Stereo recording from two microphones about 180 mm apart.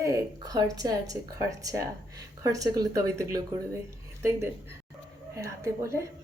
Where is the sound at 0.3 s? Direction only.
20° right (ahead or behind).